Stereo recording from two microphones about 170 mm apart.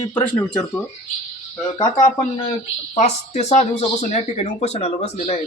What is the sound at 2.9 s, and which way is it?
Speech, 40° left (ahead or behind).